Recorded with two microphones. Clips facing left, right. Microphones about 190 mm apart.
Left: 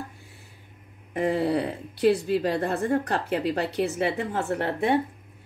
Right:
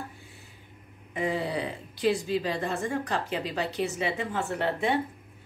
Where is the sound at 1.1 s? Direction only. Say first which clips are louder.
Left 5 dB; 60° left (ahead or behind).